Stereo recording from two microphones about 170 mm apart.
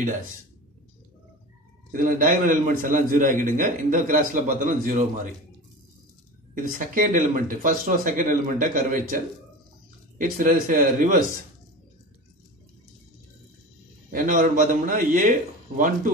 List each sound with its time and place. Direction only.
1.9 s a man's voice: 50° right (ahead or behind)
6.5 s a man's voice: 50° right (ahead or behind)
10.1 s a man's voice: 55° right (ahead or behind)
14.1 s a man's voice: 50° right (ahead or behind)